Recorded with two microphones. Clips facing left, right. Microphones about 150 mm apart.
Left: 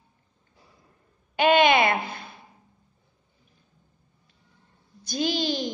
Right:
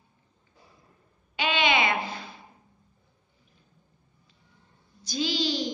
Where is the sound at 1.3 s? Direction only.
50° left (ahead or behind).